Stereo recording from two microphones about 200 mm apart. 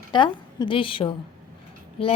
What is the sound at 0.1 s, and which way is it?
A woman's voice, 25° left (ahead or behind).